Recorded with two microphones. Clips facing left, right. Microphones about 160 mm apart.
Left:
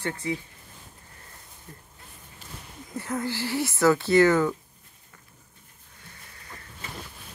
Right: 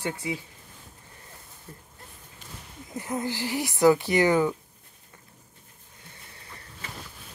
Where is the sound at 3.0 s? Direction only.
15° right (ahead or behind).